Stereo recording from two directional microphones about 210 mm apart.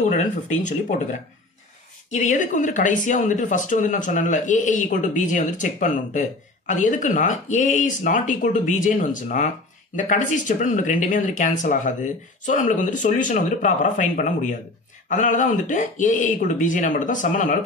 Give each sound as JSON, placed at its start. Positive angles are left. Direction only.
{"t": 0.0, "sound": "speech", "side_deg": 35}
{"t": 2.0, "sound": "speech", "side_deg": 35}